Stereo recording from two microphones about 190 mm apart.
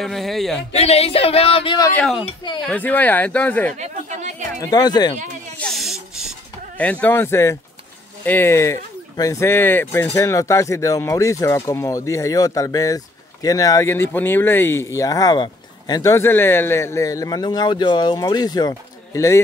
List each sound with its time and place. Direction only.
0.0 s speech: centre (ahead or behind)
0.7 s speech: 35° left (ahead or behind)
2.0 s speech: centre (ahead or behind)
3.7 s chatter: 40° right (ahead or behind)
4.6 s speech: 20° left (ahead or behind)
5.6 s snake: centre (ahead or behind)
6.8 s speech: 10° left (ahead or behind)